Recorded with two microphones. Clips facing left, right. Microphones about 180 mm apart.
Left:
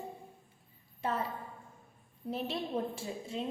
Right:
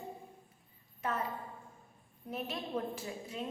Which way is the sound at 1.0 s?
30° left (ahead or behind).